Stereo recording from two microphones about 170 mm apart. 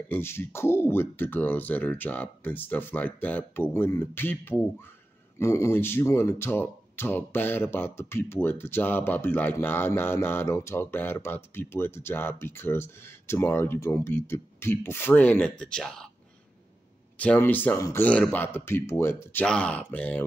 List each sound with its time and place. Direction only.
0.1 s speech: 15° left (ahead or behind)
17.2 s speech: 10° left (ahead or behind)